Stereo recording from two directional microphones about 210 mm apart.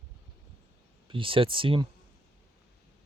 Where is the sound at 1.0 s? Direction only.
25° right (ahead or behind).